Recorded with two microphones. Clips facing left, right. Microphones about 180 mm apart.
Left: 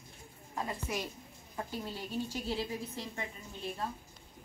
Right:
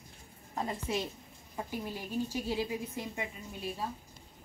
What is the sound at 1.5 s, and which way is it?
A woman's voice, 15° right (ahead or behind).